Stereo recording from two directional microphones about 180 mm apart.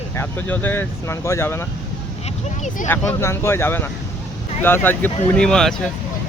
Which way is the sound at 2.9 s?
15° left (ahead or behind).